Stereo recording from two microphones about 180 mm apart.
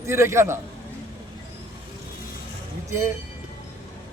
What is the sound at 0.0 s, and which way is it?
Speech, 15° right (ahead or behind).